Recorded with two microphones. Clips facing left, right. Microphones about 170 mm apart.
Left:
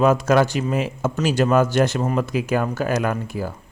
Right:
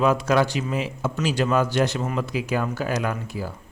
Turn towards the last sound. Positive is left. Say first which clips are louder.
# left 4 dB
turn(degrees=50)  # may be behind; listen again after turning